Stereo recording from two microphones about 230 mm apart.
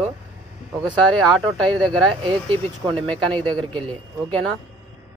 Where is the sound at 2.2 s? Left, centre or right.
Right.